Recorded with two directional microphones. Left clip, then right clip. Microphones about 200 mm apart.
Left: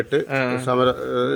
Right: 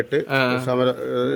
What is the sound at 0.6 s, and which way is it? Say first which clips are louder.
Speech: left 1 dB; 5° right (ahead or behind).